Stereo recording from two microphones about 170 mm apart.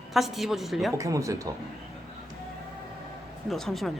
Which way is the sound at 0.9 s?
20° right (ahead or behind).